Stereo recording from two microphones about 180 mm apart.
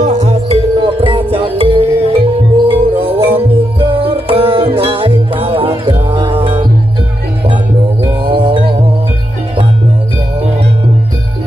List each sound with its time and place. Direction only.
0.0 s music: 40° right (ahead or behind)
8.3 s music: 30° right (ahead or behind)